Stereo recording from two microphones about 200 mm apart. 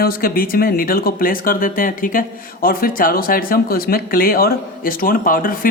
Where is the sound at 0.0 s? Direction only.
50° left (ahead or behind).